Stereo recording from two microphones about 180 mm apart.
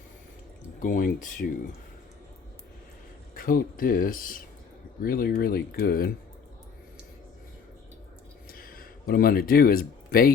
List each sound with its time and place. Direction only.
0.8 s speech: 45° left (ahead or behind)
3.3 s speech: 50° left (ahead or behind)
8.4 s a sound: 55° left (ahead or behind)